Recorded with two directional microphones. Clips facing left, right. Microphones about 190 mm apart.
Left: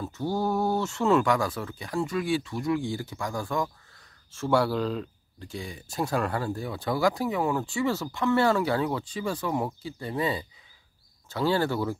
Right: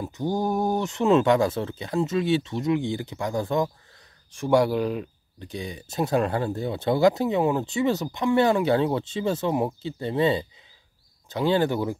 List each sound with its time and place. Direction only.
0.0 s speech: 15° right (ahead or behind)